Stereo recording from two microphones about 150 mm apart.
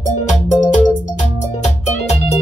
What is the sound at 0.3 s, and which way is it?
Music, 55° left (ahead or behind).